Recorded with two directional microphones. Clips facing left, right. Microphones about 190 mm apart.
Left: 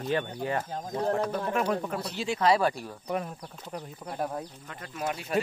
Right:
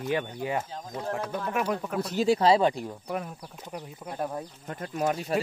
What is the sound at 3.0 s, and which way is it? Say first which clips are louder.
Speech: left 5 dB; centre (ahead or behind).